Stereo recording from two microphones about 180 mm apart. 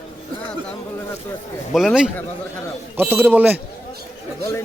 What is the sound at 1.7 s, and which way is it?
A man's voice, centre (ahead or behind).